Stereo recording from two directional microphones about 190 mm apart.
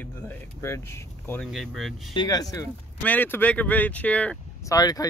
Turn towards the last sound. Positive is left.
turn(degrees=20)  # may be behind; listen again after turning